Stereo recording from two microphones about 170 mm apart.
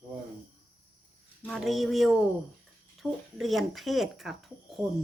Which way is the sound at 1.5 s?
Centre (ahead or behind).